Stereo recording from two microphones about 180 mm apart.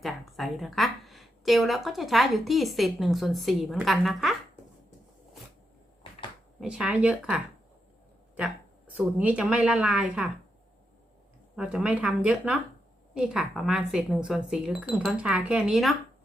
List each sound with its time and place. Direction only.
0.0 s a woman's voice: centre (ahead or behind)
6.6 s speech: 5° right (ahead or behind)
9.0 s a woman's voice: 5° right (ahead or behind)
11.5 s speech: 5° right (ahead or behind)